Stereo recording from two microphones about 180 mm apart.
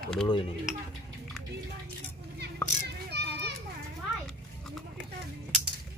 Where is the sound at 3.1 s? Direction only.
65° right (ahead or behind).